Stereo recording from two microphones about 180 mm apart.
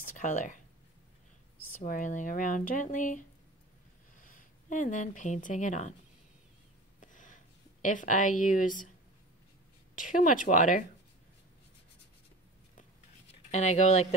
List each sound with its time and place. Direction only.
0.0 s speech: 45° left (ahead or behind)
1.8 s speech: 45° left (ahead or behind)
7.0 s a sound: 45° left (ahead or behind)
9.9 s speech: 50° left (ahead or behind)
13.5 s speech: 40° left (ahead or behind)